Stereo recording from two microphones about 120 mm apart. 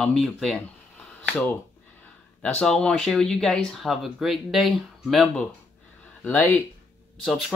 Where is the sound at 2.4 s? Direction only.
5° left (ahead or behind).